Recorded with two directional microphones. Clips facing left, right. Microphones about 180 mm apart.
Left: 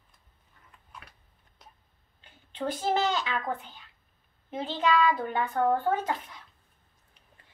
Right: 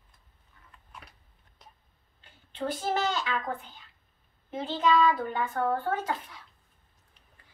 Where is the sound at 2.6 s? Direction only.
20° left (ahead or behind).